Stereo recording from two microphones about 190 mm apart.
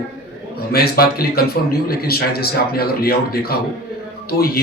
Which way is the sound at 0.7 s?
55° left (ahead or behind).